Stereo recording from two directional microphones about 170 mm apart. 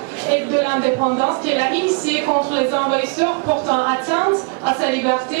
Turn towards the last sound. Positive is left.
turn(degrees=-15)  # may be behind; listen again after turning